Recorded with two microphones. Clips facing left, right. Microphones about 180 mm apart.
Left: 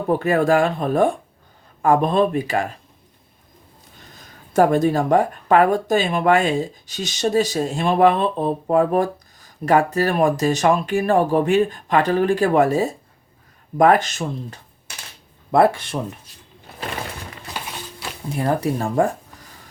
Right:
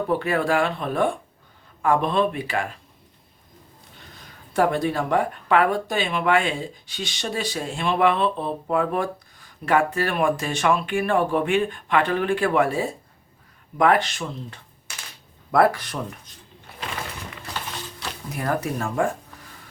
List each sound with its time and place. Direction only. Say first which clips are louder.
0.1 s speech: left 7 dB; 45° left (ahead or behind)
4.5 s speech: left 5 dB; 45° left (ahead or behind)
15.5 s speech: left 3 dB; 25° left (ahead or behind)
17.5 s music: left 1 dB; 15° left (ahead or behind)
18.3 s speech: left 5 dB; 30° left (ahead or behind)